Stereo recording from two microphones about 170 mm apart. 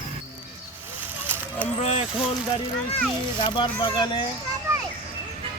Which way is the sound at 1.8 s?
40° left (ahead or behind).